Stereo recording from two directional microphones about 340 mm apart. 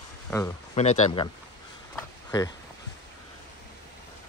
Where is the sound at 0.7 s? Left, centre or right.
Centre.